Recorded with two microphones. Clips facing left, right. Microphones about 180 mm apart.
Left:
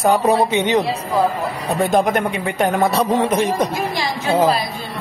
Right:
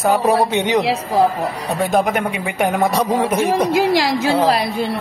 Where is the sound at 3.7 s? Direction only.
90° right; by 4.9 s 65° right (ahead or behind).